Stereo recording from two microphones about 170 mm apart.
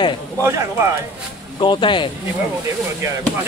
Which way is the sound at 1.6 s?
30° left (ahead or behind).